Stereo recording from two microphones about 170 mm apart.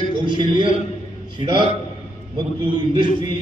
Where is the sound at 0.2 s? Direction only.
30° right (ahead or behind).